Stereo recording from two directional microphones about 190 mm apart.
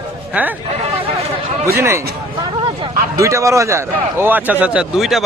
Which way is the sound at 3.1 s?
15° right (ahead or behind).